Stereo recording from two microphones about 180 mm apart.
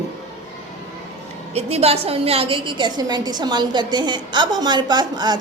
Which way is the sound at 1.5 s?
35° right (ahead or behind).